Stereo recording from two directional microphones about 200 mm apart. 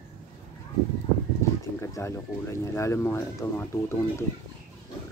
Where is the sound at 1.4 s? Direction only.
15° left (ahead or behind).